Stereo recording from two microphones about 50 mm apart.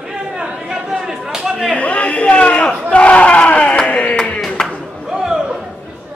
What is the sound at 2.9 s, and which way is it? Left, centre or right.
Battle cry, left.